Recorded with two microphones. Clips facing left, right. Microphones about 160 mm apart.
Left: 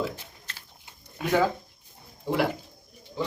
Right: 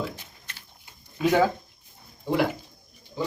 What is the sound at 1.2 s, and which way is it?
Speech, 55° left (ahead or behind).